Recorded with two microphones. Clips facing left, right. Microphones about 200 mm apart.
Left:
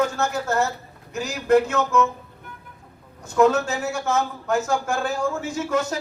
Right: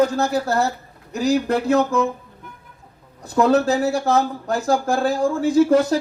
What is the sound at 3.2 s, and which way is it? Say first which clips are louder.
Speech: right 2 dB; 35° right (ahead or behind).